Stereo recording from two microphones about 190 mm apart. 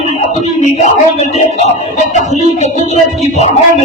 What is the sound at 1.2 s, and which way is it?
Music, 40° left (ahead or behind).